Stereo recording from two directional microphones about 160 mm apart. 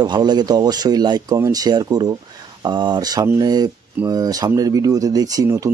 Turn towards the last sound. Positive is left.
turn(degrees=-20)  # may be behind; listen again after turning